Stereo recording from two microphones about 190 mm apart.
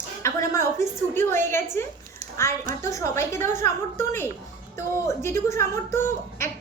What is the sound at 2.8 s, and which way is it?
A woman's voice, 15° left (ahead or behind).